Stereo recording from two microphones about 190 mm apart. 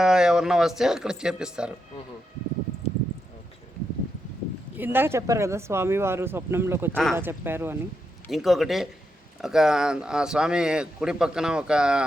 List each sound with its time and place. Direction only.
0.0 s speech: 5° right (ahead or behind)
2.8 s a sound: 35° left (ahead or behind)
4.8 s speech: 10° right (ahead or behind)
6.9 s speech: centre (ahead or behind)
7.2 s speech: 10° right (ahead or behind)
8.3 s speech: centre (ahead or behind)